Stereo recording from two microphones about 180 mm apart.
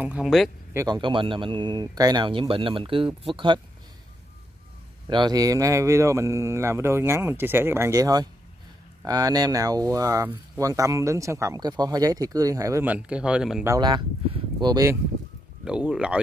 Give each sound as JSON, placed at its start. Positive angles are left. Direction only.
{"t": 0.0, "sound": "speech", "side_deg": -5}
{"t": 0.7, "sound": "speech", "side_deg": -20}
{"t": 5.0, "sound": "speech", "side_deg": -20}
{"t": 13.7, "sound": "speech", "side_deg": -25}
{"t": 15.6, "sound": "speech", "side_deg": -5}